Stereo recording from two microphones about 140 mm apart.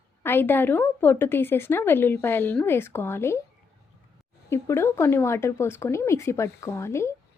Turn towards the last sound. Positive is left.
turn(degrees=20)  # may be behind; listen again after turning